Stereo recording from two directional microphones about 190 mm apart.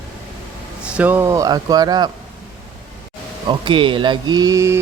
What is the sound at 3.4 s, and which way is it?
Speech, 25° right (ahead or behind).